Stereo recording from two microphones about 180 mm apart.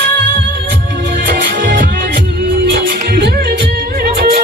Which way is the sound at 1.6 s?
55° right (ahead or behind).